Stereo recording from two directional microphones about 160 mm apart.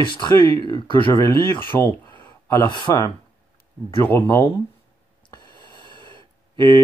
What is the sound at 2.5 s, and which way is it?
Speech, 25° left (ahead or behind).